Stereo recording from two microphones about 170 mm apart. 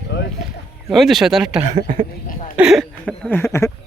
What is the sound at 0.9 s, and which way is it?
Speech, centre (ahead or behind).